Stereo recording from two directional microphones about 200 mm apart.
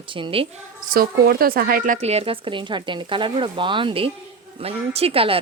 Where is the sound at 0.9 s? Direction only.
45° right (ahead or behind).